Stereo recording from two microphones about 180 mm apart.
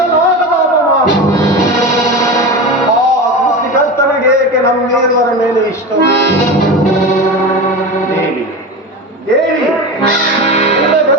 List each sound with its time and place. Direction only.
1.3 s music: 15° left (ahead or behind)
3.9 s a sound: 15° left (ahead or behind)
10.5 s music: 35° left (ahead or behind)